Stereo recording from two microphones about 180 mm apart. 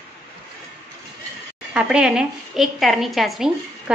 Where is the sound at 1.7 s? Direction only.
5° right (ahead or behind).